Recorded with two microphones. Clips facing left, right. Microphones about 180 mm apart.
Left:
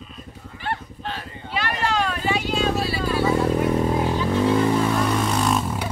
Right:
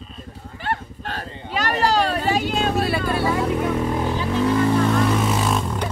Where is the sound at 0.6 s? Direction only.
45° right (ahead or behind).